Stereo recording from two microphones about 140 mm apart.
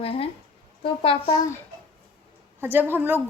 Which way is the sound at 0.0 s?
40° left (ahead or behind).